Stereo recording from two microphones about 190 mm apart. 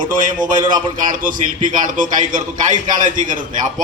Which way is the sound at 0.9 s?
45° right (ahead or behind).